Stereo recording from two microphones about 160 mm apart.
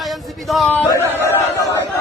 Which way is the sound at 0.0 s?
Centre (ahead or behind).